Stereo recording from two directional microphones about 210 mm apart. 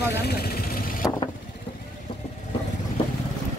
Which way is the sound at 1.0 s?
15° left (ahead or behind).